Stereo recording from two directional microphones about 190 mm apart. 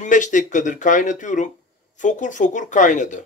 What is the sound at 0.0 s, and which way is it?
Speech, 40° left (ahead or behind).